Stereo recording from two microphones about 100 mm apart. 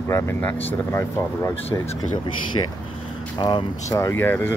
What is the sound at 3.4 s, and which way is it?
Speech, 50° left (ahead or behind).